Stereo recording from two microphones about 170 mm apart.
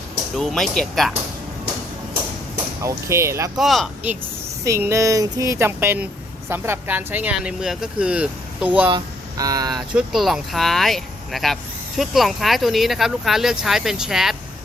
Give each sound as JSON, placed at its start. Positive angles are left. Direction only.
{"t": 0.3, "sound": "speech", "side_deg": 0}
{"t": 2.8, "sound": "speech", "side_deg": -15}
{"t": 3.6, "sound": "speech", "side_deg": 0}
{"t": 4.6, "sound": "speech", "side_deg": -15}
{"t": 9.4, "sound": "speech", "side_deg": -20}
{"t": 9.9, "sound": "speech", "side_deg": 0}